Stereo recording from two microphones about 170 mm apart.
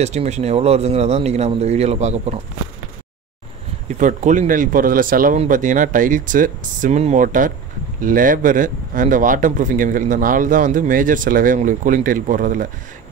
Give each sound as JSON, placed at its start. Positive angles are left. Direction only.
{"t": 0.0, "sound": "speech", "side_deg": -40}
{"t": 4.0, "sound": "a man's voice", "side_deg": -45}